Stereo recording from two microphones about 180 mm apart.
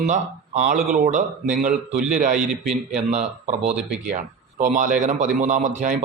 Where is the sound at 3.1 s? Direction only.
40° right (ahead or behind).